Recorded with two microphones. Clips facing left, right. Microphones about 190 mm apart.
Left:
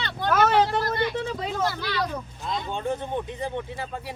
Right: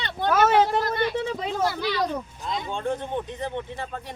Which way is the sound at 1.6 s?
15° right (ahead or behind).